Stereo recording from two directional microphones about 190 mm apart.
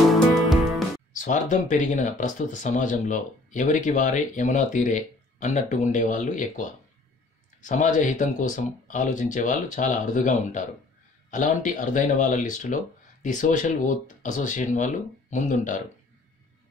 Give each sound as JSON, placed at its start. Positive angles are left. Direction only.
{"t": 1.1, "sound": "speech", "side_deg": 40}